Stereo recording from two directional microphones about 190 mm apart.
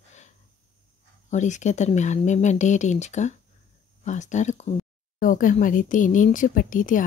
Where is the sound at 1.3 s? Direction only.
40° left (ahead or behind).